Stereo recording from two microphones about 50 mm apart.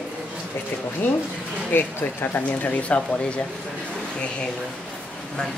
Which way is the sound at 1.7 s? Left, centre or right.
Left.